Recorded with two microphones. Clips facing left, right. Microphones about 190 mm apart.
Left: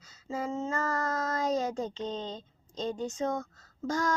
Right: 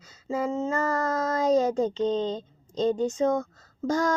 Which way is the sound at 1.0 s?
30° right (ahead or behind).